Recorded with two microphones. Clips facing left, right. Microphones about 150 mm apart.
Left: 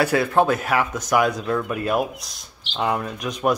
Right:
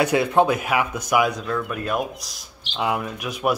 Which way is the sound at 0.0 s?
20° right (ahead or behind).